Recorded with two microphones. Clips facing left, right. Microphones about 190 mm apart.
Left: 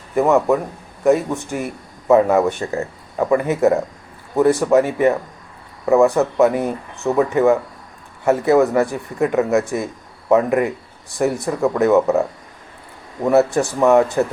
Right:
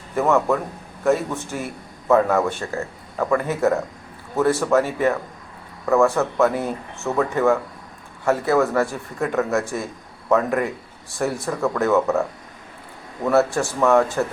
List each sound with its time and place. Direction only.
0.2 s a man's voice: 15° left (ahead or behind)
13.2 s speech: 15° left (ahead or behind)